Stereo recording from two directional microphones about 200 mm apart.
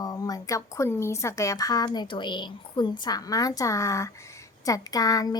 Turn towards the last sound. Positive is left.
turn(degrees=20)  # may be behind; listen again after turning